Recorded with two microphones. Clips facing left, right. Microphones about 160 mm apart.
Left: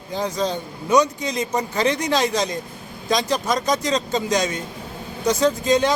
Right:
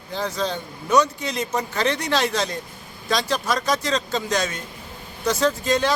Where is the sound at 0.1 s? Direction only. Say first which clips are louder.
Left 2 dB; 15° left (ahead or behind).